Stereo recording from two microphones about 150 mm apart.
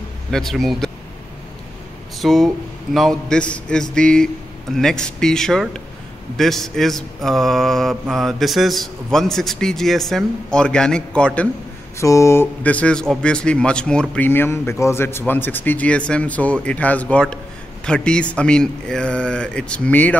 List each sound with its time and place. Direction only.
0.3 s a man's voice: centre (ahead or behind)
2.1 s mantra: centre (ahead or behind)
12.0 s speech: 20° left (ahead or behind)